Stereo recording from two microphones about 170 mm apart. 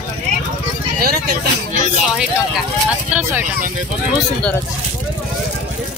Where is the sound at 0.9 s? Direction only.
60° right (ahead or behind).